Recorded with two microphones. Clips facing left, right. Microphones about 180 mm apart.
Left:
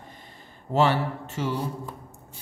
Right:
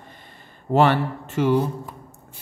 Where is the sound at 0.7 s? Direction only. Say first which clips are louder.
Right 4 dB; 60° right (ahead or behind).